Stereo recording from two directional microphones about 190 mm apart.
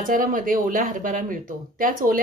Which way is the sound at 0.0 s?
45° right (ahead or behind).